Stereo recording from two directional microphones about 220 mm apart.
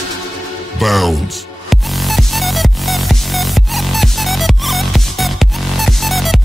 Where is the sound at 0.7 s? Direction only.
Centre (ahead or behind).